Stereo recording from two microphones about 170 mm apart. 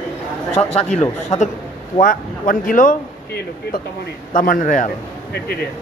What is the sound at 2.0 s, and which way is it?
Speech, 55° left (ahead or behind).